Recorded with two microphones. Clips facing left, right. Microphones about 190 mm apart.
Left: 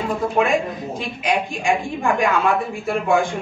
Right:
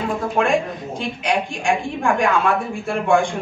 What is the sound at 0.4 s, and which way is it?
A woman's voice, 5° left (ahead or behind).